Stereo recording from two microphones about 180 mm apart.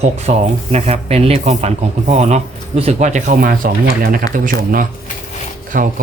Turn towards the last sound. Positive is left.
turn(degrees=-50)  # may be behind; listen again after turning